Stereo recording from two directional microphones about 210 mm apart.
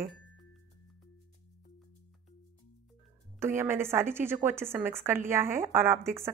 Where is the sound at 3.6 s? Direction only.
10° right (ahead or behind).